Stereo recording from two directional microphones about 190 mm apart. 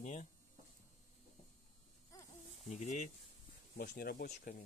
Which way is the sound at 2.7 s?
40° left (ahead or behind).